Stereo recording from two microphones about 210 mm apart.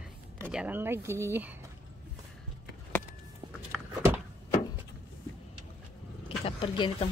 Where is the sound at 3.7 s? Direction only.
5° right (ahead or behind).